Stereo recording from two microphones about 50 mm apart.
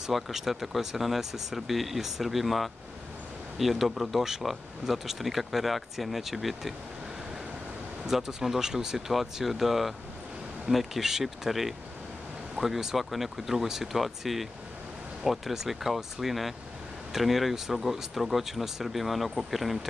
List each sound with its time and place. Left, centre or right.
0.0 s speech: centre
8.1 s speech: centre